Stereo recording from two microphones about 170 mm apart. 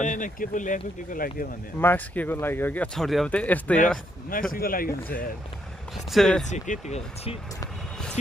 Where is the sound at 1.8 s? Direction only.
15° left (ahead or behind).